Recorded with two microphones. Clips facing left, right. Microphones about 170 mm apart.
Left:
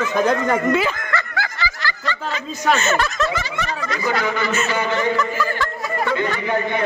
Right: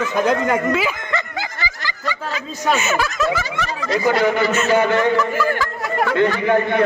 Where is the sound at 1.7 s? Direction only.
20° right (ahead or behind).